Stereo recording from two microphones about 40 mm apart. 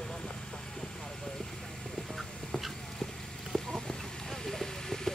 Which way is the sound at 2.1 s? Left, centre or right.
Centre.